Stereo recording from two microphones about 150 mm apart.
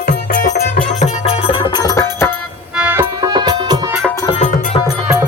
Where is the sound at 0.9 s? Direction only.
45° left (ahead or behind).